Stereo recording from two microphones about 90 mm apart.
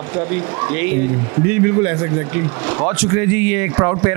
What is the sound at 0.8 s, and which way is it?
Speech, 15° right (ahead or behind).